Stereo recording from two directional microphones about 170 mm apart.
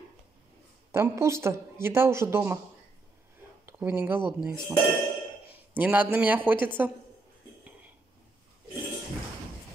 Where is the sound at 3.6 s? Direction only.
15° right (ahead or behind).